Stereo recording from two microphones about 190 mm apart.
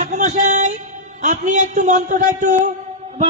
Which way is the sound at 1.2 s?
40° right (ahead or behind).